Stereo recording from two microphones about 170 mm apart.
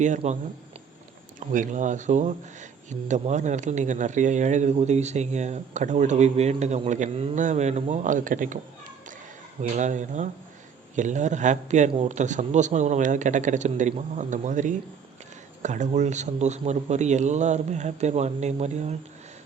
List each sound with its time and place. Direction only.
0.0 s speech: 45° right (ahead or behind)
1.4 s speech: 50° right (ahead or behind)